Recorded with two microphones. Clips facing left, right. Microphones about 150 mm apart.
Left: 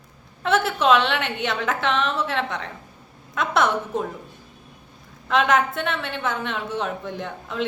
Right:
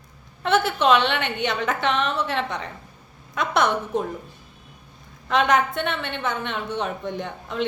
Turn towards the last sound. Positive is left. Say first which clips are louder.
# right 1 dB
turn(degrees=0)  # may be behind; listen again after turning